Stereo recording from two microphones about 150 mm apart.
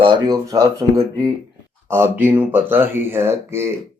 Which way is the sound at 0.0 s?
30° right (ahead or behind).